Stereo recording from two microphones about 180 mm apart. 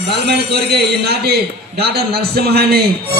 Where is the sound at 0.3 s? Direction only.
65° right (ahead or behind).